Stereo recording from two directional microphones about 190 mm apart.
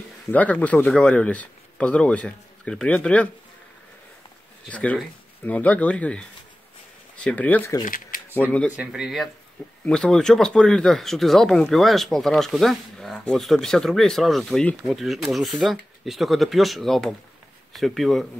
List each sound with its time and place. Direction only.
0.3 s speech: 10° left (ahead or behind)
4.6 s speech: 5° left (ahead or behind)
7.2 s speech: 10° left (ahead or behind)
7.8 s speech: 50° left (ahead or behind)
8.3 s speech: 5° left (ahead or behind)
8.7 s speech: 5° right (ahead or behind)